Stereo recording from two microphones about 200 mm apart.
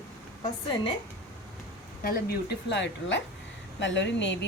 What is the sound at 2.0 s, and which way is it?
Speech, 50° left (ahead or behind).